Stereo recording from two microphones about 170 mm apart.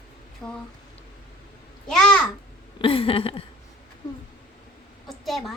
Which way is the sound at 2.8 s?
30° left (ahead or behind).